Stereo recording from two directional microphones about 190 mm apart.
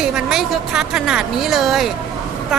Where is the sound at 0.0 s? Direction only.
5° right (ahead or behind).